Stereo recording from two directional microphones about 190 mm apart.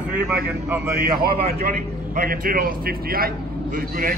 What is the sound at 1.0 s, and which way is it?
A man's voice, 55° right (ahead or behind).